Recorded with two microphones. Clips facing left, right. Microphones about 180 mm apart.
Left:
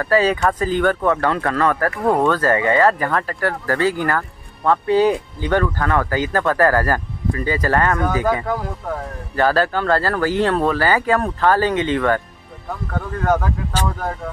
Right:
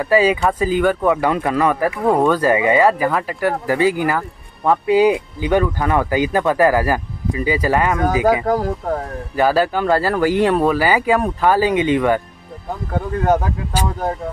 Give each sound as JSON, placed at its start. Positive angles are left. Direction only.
{"t": 0.0, "sound": "speech", "side_deg": -10}
{"t": 8.5, "sound": "speech", "side_deg": -40}
{"t": 9.3, "sound": "speech", "side_deg": -10}